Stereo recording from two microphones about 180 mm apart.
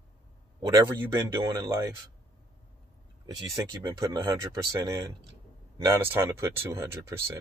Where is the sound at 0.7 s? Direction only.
20° right (ahead or behind).